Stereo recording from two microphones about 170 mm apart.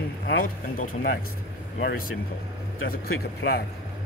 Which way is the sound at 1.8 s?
75° left (ahead or behind).